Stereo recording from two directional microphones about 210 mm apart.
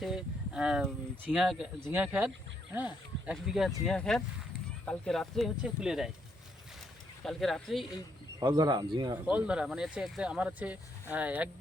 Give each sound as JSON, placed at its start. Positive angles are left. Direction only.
{"t": 0.0, "sound": "speech", "side_deg": -5}
{"t": 7.3, "sound": "speech", "side_deg": 0}
{"t": 8.4, "sound": "speech", "side_deg": -20}
{"t": 9.2, "sound": "speech", "side_deg": -5}